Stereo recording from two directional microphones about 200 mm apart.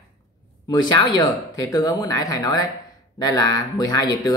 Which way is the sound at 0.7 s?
20° left (ahead or behind).